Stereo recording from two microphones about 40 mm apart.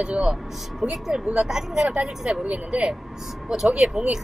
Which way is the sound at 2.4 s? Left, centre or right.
Right.